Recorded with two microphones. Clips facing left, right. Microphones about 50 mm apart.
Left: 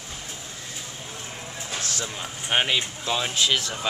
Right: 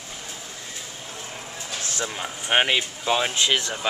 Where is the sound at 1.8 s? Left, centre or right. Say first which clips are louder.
Right 6 dB; centre.